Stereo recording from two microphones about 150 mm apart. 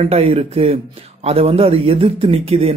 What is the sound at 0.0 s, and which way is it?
Speech, 40° right (ahead or behind).